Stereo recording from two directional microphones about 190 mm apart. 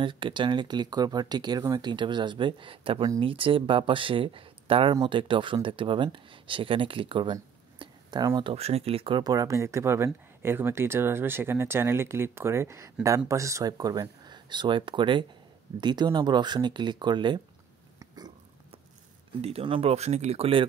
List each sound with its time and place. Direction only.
0.0 s speech: 25° right (ahead or behind)
17.9 s burping: 20° right (ahead or behind)
19.4 s speech: 30° right (ahead or behind)